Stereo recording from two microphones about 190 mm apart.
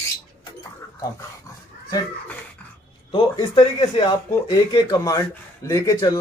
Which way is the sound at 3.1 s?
25° left (ahead or behind).